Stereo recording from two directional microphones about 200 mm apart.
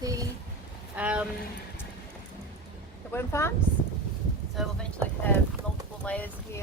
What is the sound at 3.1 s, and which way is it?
Speech, 10° left (ahead or behind).